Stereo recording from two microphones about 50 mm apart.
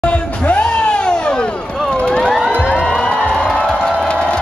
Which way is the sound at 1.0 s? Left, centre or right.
Centre.